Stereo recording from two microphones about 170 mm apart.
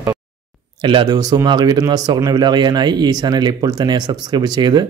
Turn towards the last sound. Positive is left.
turn(degrees=-25)  # may be behind; listen again after turning